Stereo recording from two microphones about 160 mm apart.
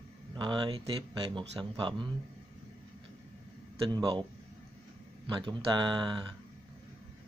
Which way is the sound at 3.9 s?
30° right (ahead or behind).